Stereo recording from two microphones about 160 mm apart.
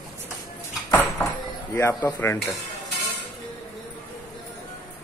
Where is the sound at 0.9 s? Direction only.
15° left (ahead or behind).